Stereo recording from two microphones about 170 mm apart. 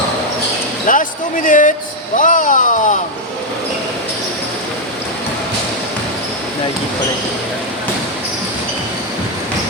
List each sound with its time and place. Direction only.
0.9 s speech: 50° left (ahead or behind)